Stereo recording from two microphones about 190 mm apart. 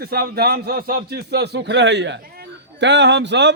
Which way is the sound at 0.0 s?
55° right (ahead or behind).